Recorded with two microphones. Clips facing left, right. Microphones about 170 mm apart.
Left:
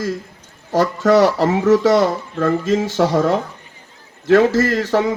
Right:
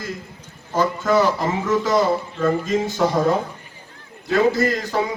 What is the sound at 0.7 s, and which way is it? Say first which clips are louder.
A man's voice: left 5 dB; 80° left.